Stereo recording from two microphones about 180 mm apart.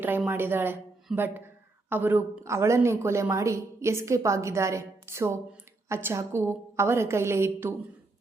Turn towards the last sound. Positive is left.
turn(degrees=-15)  # may be behind; listen again after turning